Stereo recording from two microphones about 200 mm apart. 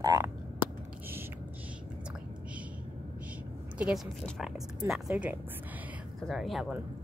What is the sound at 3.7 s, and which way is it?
Speech, 5° right (ahead or behind).